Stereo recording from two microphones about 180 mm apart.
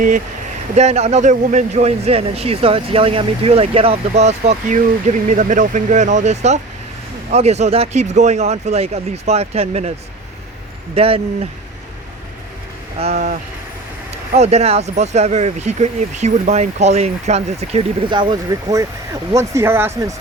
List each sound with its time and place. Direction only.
0.8 s speech: 35° right (ahead or behind)
10.9 s speech: 30° right (ahead or behind)
13.0 s speech: 40° right (ahead or behind); by 20.1 s 15° right (ahead or behind)